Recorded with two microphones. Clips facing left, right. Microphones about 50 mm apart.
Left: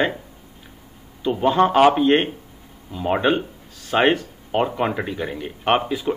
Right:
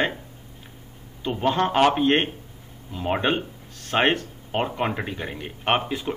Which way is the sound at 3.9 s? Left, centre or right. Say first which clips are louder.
Left 3 dB; centre.